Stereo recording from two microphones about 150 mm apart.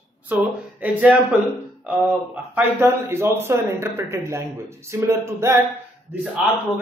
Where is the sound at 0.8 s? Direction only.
10° right (ahead or behind).